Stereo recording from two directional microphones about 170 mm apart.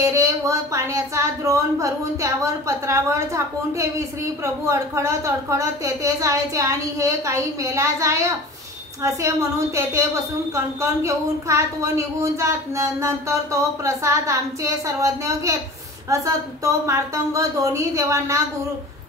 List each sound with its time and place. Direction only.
0.0 s speech: 15° right (ahead or behind)